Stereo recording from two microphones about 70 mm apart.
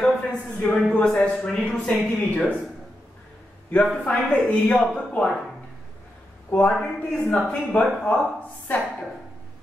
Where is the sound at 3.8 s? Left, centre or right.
Centre.